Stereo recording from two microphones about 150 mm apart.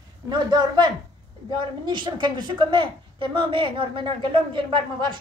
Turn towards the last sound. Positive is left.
turn(degrees=-30)  # may be behind; listen again after turning